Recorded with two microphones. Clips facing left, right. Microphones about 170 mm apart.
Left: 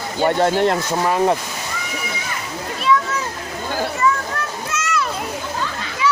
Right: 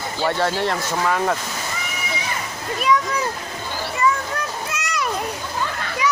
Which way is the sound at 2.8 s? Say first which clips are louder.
Left 1 dB; 15° right (ahead or behind).